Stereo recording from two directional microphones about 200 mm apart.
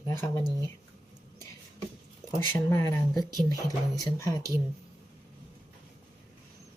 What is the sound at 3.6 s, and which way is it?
Speech, 15° right (ahead or behind).